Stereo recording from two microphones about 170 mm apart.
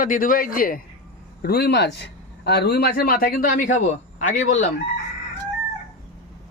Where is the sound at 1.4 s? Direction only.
65° left (ahead or behind); by 4.6 s 45° left (ahead or behind).